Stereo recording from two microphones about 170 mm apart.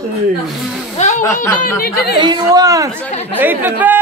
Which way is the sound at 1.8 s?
65° left (ahead or behind).